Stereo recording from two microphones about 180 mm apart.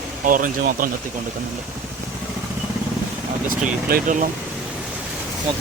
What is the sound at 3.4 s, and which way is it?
Speech, 50° right (ahead or behind).